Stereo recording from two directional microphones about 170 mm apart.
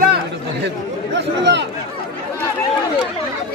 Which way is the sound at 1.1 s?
90° right.